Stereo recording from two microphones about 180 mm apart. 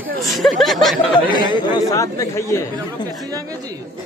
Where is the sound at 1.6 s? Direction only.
25° left (ahead or behind).